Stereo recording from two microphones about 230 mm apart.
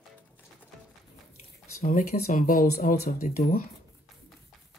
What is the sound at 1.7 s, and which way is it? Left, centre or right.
Speech, left.